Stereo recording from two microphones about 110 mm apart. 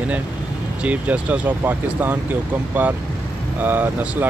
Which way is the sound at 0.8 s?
15° right (ahead or behind).